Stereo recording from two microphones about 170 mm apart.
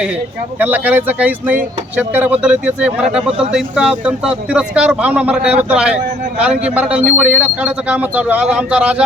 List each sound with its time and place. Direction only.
0.6 s speech: 10° right (ahead or behind)